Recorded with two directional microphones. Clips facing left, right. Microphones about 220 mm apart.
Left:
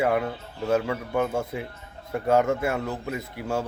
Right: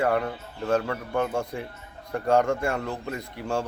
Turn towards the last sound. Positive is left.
turn(degrees=5)  # may be behind; listen again after turning